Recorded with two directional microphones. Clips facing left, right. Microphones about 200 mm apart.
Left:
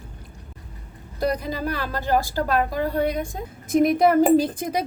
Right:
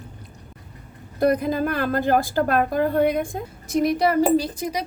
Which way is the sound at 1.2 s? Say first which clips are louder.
Right 5 dB; 55° right (ahead or behind).